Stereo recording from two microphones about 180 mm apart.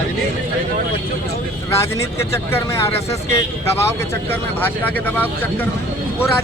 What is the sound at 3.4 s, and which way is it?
Speech, 15° left (ahead or behind).